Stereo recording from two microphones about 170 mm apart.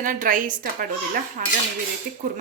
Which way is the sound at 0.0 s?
50° right (ahead or behind).